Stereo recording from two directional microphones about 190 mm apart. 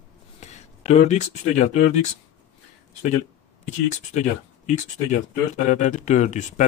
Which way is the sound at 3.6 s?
40° left (ahead or behind).